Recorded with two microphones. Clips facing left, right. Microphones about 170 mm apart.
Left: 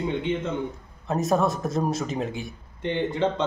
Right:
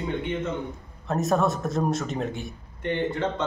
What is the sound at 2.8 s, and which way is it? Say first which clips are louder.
Speech: left 2 dB; 20° left (ahead or behind).